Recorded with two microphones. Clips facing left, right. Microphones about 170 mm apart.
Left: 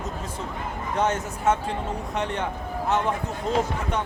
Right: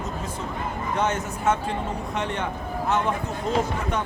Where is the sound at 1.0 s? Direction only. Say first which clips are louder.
Left 2 dB; 40° left (ahead or behind).